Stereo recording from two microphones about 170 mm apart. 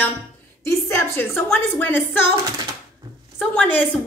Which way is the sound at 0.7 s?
15° left (ahead or behind).